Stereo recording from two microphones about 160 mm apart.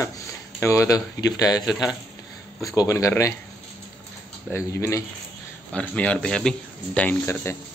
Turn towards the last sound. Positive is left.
turn(degrees=15)  # may be behind; listen again after turning